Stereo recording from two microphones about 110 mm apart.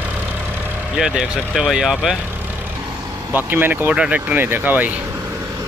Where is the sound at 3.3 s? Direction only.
15° right (ahead or behind).